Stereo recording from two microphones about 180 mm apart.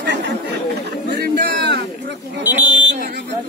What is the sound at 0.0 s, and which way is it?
Chatter, 75° right (ahead or behind).